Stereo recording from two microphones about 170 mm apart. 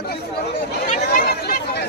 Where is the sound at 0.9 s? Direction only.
50° left (ahead or behind).